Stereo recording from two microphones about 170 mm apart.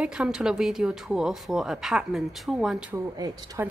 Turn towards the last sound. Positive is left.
turn(degrees=-20)  # may be behind; listen again after turning